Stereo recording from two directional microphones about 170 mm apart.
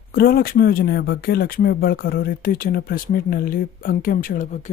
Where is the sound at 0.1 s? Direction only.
60° left (ahead or behind).